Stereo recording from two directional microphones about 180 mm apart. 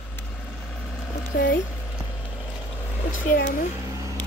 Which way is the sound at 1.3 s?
65° left (ahead or behind).